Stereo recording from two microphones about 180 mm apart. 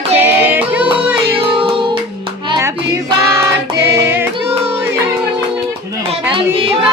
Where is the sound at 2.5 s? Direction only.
15° right (ahead or behind).